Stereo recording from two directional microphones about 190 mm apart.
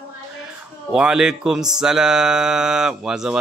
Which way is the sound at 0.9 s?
5° right (ahead or behind).